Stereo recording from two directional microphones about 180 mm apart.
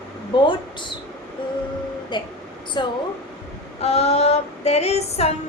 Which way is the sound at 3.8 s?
35° left (ahead or behind).